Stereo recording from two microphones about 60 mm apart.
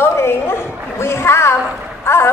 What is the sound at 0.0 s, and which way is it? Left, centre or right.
Dog, left.